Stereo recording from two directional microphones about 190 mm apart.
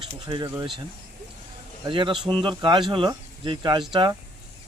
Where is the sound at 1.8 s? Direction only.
25° right (ahead or behind).